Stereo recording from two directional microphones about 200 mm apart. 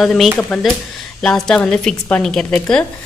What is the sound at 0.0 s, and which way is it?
A woman's voice, centre (ahead or behind).